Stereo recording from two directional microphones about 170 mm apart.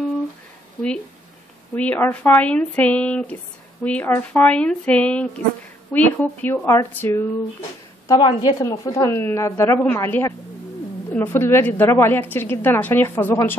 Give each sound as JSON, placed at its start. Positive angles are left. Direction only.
{"t": 1.8, "sound": "a woman's voice", "side_deg": 10}
{"t": 8.1, "sound": "a woman's voice", "side_deg": 25}